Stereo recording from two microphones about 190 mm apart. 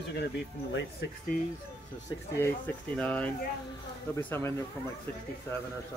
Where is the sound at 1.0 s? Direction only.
65° left (ahead or behind).